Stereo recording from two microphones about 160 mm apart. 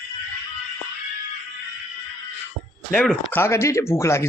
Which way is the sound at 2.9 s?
10° left (ahead or behind).